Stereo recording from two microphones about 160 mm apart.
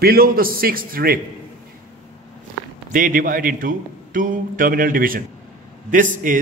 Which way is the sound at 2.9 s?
60° right (ahead or behind).